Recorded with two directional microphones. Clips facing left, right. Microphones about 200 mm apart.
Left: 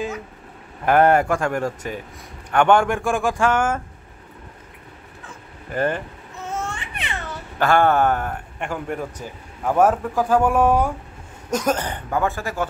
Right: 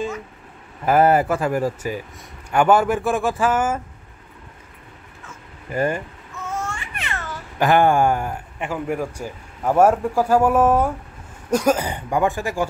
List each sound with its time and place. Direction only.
0.8 s speech: 5° right (ahead or behind)
5.7 s a man's voice: 10° right (ahead or behind)
6.4 s baby cry: 20° left (ahead or behind)
7.5 s a man's voice: 15° right (ahead or behind)